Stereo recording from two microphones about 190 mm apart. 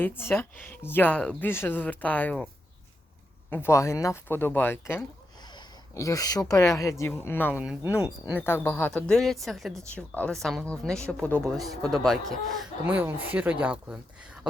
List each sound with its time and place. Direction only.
0.0 s speech: 10° left (ahead or behind)
3.5 s speech: 15° left (ahead or behind)
7.5 s speech: 5° right (ahead or behind)
8.4 s speech: 10° left (ahead or behind)
12.8 s speech: 10° right (ahead or behind)